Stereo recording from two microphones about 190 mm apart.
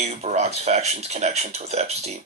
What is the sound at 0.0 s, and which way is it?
Speech, 35° right (ahead or behind).